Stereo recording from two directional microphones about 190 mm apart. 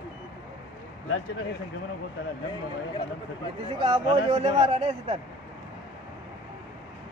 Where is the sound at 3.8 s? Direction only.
30° right (ahead or behind).